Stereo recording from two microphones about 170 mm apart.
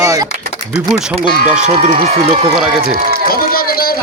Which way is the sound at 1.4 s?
50° right (ahead or behind).